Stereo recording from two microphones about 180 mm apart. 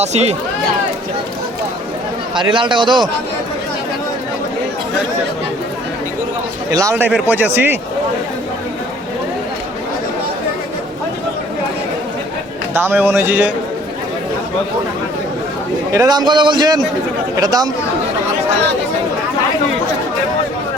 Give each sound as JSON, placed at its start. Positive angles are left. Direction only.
{"t": 0.0, "sound": "speech", "side_deg": -35}
{"t": 2.3, "sound": "a man's voice", "side_deg": -25}
{"t": 6.7, "sound": "speech", "side_deg": -20}
{"t": 12.7, "sound": "speech", "side_deg": -15}
{"t": 15.9, "sound": "a man's voice", "side_deg": -20}